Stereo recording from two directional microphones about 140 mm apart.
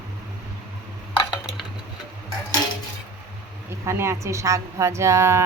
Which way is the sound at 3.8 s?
20° right (ahead or behind).